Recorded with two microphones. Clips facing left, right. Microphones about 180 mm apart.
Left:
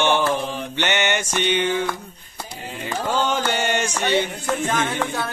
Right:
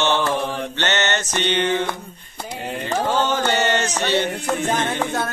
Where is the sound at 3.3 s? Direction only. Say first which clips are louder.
Right 2 dB; 10° left (ahead or behind).